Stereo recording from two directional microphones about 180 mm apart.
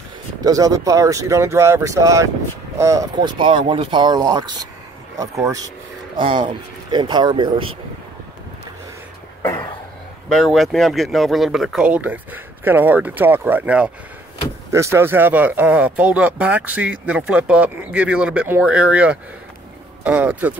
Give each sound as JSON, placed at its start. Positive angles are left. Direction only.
{"t": 0.4, "sound": "speech", "side_deg": -20}
{"t": 10.3, "sound": "speech", "side_deg": 0}